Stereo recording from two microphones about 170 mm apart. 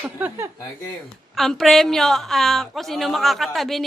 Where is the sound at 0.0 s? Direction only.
10° right (ahead or behind).